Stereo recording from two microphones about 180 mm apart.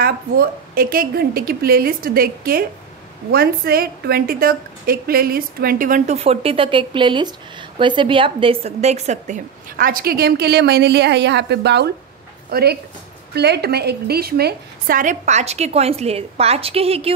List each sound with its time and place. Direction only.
0.0 s a woman's voice: 55° right (ahead or behind); by 17.1 s 35° right (ahead or behind)